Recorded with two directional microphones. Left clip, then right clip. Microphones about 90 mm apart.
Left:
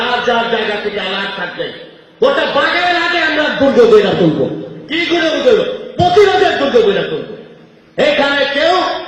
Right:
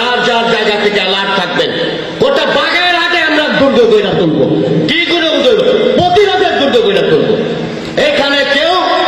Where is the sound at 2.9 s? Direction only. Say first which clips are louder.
Right 3 dB; 15° left (ahead or behind).